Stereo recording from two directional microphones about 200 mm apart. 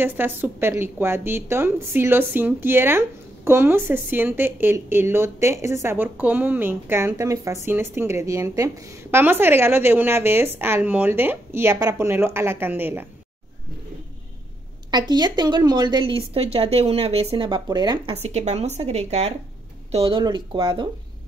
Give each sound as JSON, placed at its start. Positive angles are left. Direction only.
{"t": 0.0, "sound": "a woman's voice", "side_deg": -10}
{"t": 14.9, "sound": "a woman's voice", "side_deg": -20}